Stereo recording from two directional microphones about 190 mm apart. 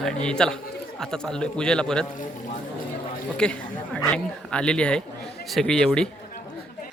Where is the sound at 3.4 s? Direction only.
5° left (ahead or behind).